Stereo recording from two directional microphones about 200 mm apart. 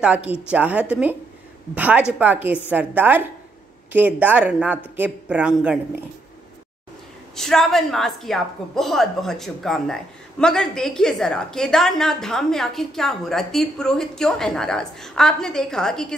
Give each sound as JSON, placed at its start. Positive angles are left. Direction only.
{"t": 0.0, "sound": "speech", "side_deg": -5}
{"t": 7.3, "sound": "a woman's voice", "side_deg": 0}